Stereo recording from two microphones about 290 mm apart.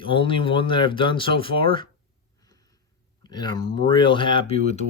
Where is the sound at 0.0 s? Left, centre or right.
Centre.